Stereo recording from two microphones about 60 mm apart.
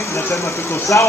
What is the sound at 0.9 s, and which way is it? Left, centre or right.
Speech, left.